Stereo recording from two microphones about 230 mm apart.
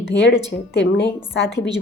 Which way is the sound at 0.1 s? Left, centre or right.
Left.